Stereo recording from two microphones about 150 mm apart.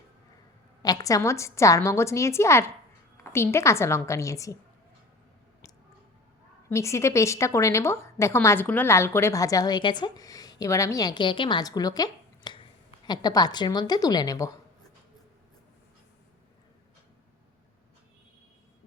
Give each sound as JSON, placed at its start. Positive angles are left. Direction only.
{"t": 0.8, "sound": "a woman's voice", "side_deg": 25}
{"t": 6.7, "sound": "a woman's voice", "side_deg": 20}